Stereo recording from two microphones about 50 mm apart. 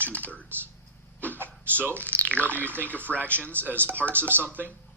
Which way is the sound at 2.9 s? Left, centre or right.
Left.